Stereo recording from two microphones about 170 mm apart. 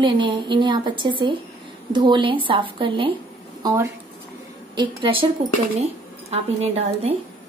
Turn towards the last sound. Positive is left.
turn(degrees=-40)  # may be behind; listen again after turning